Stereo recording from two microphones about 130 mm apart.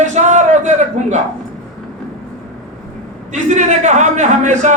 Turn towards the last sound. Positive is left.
turn(degrees=-65)  # may be behind; listen again after turning